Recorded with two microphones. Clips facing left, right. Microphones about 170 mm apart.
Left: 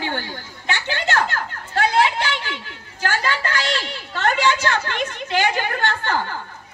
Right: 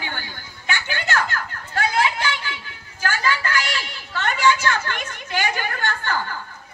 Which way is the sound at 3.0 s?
30° left (ahead or behind).